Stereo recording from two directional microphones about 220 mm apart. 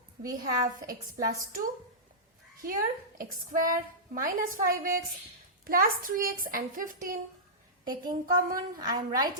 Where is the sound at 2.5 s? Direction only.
40° right (ahead or behind).